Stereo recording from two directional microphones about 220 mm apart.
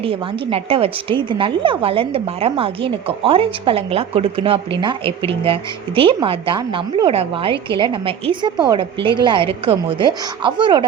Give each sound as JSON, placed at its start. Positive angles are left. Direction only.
{"t": 0.0, "sound": "a woman's voice", "side_deg": -25}